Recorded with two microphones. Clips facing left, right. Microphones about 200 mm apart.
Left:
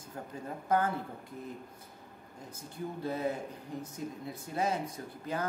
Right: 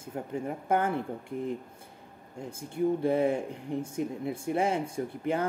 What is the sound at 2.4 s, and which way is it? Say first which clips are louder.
Speech: right 11 dB; 25° right (ahead or behind).